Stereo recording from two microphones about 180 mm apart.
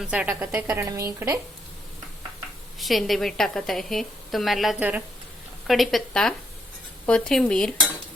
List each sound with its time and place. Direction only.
0.0 s a woman's voice: 5° right (ahead or behind)
2.7 s a woman's voice: centre (ahead or behind)